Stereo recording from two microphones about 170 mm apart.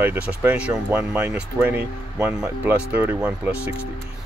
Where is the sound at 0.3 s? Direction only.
10° right (ahead or behind).